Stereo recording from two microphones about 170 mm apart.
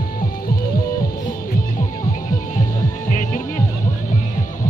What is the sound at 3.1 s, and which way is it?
Music, 50° left (ahead or behind).